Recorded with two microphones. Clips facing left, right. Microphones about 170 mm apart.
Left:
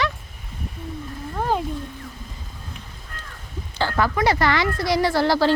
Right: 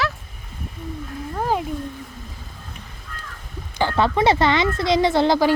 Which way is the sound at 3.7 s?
20° right (ahead or behind).